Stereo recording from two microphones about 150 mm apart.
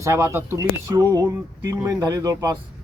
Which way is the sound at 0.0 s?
20° right (ahead or behind).